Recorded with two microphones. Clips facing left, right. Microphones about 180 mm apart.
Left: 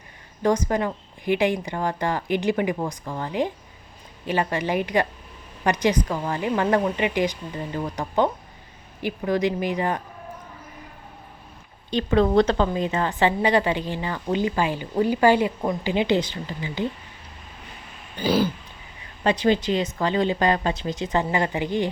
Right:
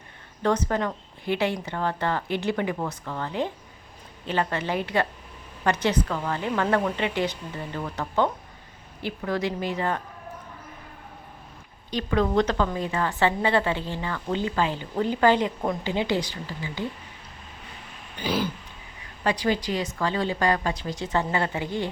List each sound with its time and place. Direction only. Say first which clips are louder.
0.4 s a woman's voice: left 2 dB; 10° left (ahead or behind)
11.9 s speech: left 4 dB; 25° left (ahead or behind)
12.5 s a woman's voice: left 3 dB; 20° left (ahead or behind); by 15.8 s 5° left (ahead or behind)
15.8 s speech: left 6 dB; 15° left (ahead or behind)
18.2 s throat clearing: left 6 dB; 35° left (ahead or behind)
19.2 s speech: left 4 dB; 25° left (ahead or behind)